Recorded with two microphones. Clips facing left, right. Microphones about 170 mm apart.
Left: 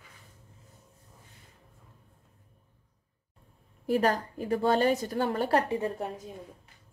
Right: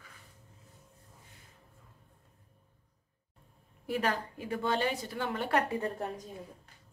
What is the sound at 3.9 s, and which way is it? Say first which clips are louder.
A woman's voice: left 6 dB; 40° left (ahead or behind).